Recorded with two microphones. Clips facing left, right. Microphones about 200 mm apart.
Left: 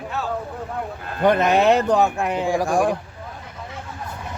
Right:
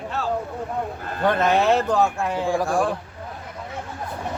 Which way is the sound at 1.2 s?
20° left (ahead or behind).